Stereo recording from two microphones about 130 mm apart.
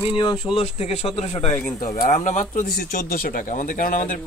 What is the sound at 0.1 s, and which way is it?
Speech, 40° left (ahead or behind).